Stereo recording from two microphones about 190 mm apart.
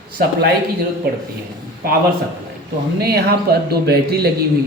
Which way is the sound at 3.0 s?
55° right (ahead or behind).